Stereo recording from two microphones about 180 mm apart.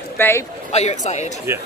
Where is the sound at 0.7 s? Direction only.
40° left (ahead or behind).